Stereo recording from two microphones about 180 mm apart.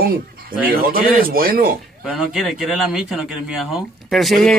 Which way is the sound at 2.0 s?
Centre (ahead or behind).